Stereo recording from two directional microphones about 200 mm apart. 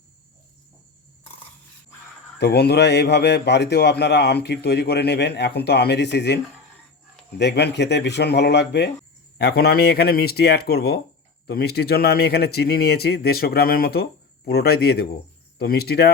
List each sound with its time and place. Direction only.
2.4 s a man's voice: 55° left (ahead or behind)